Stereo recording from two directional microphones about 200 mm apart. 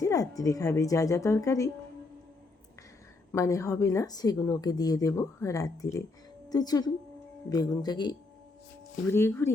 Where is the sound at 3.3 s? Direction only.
15° left (ahead or behind).